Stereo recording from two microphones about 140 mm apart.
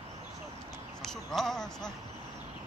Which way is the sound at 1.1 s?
5° left (ahead or behind).